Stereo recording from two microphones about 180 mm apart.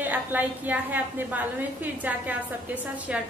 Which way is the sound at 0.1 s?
10° right (ahead or behind).